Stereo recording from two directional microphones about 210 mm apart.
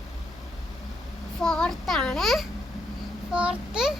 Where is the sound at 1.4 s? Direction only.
5° left (ahead or behind).